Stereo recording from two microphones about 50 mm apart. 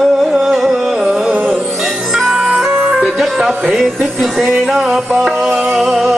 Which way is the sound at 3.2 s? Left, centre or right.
Centre.